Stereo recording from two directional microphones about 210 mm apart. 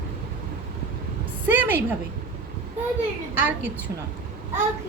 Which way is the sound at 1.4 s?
10° right (ahead or behind).